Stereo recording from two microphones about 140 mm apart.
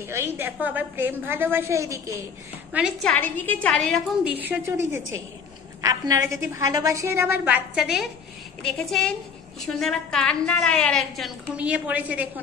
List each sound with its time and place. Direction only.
0.0 s a woman's voice: 15° right (ahead or behind)
3.0 s a woman's voice: 10° left (ahead or behind)
4.2 s a woman's voice: 10° right (ahead or behind)